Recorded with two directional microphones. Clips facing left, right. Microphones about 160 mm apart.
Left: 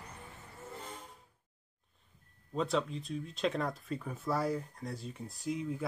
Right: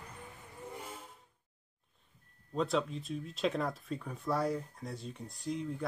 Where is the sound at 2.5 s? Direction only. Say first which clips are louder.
Even; centre (ahead or behind).